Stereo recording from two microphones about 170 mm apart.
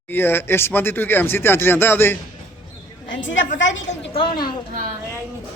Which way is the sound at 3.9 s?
35° left (ahead or behind).